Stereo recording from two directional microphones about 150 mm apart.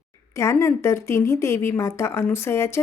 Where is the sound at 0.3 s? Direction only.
20° left (ahead or behind).